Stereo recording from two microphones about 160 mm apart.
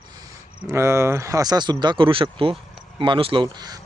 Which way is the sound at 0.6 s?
20° right (ahead or behind).